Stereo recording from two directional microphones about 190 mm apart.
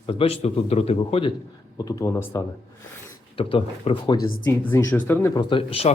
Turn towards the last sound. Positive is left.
turn(degrees=30)  # may be behind; listen again after turning